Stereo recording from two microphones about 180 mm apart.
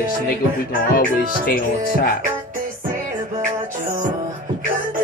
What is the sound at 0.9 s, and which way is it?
Music, 55° left (ahead or behind).